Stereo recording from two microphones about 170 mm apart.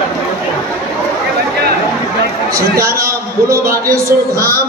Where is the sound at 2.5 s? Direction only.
15° right (ahead or behind).